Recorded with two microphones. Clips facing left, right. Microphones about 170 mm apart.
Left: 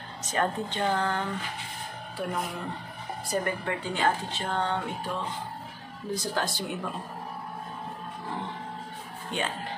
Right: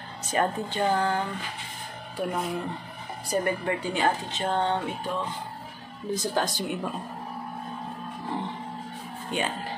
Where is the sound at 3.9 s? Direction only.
20° right (ahead or behind).